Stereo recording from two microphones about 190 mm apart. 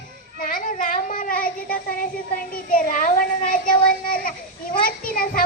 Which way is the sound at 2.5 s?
45° left (ahead or behind).